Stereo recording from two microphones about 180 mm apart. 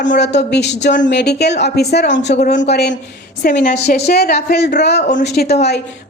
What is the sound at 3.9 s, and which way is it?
A woman's voice, 60° left (ahead or behind).